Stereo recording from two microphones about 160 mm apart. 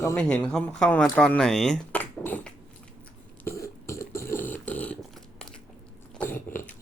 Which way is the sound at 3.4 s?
15° left (ahead or behind).